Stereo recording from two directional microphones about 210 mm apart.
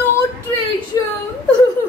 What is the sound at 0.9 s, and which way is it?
Whimper, 15° left (ahead or behind).